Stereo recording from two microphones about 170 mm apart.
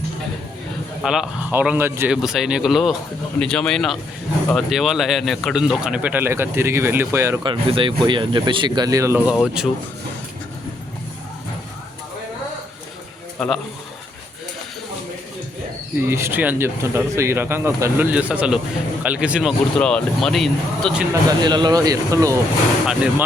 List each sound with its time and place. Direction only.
1.0 s speech: 5° right (ahead or behind)
7.4 s speech: 30° right (ahead or behind); by 9.3 s 15° right (ahead or behind)
9.3 s speech: centre (ahead or behind)
13.4 s speech: centre (ahead or behind)
16.0 s speech: 15° right (ahead or behind); by 20.9 s centre (ahead or behind)
21.1 s speech: 25° right (ahead or behind)